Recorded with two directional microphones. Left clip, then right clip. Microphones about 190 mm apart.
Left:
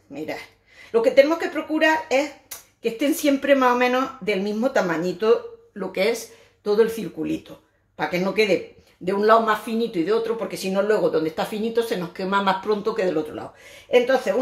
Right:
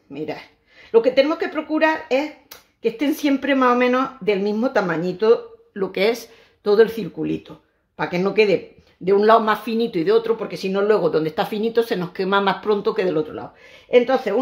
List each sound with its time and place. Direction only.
0.1 s speech: 40° right (ahead or behind)